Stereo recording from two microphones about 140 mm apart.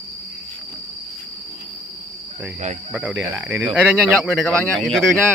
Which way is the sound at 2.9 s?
10° right (ahead or behind).